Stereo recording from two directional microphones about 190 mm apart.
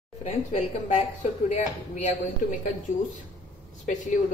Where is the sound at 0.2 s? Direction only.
35° left (ahead or behind).